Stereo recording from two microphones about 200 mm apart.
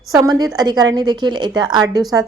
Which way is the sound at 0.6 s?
20° right (ahead or behind).